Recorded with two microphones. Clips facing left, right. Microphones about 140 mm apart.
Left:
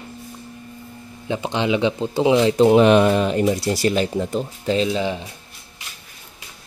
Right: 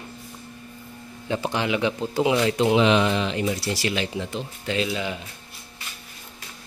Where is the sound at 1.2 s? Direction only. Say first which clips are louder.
Left 3 dB; 20° left (ahead or behind).